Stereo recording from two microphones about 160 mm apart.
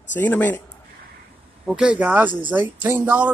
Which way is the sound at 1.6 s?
5° right (ahead or behind).